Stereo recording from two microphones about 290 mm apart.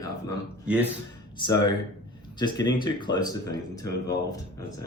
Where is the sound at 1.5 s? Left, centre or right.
Centre.